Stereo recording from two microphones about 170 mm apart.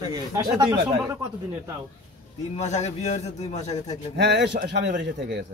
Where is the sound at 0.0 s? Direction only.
20° right (ahead or behind).